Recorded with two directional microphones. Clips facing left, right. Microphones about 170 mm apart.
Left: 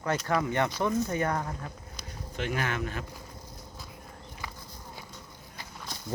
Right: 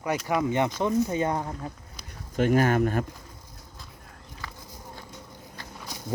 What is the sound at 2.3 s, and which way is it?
Speech, 45° right (ahead or behind).